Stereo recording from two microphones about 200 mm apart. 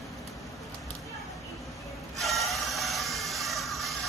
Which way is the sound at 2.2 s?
Centre (ahead or behind).